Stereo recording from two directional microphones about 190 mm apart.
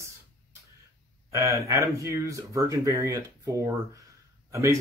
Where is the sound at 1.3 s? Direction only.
15° right (ahead or behind).